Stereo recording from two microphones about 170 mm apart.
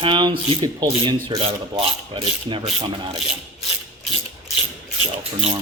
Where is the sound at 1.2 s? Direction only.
30° right (ahead or behind).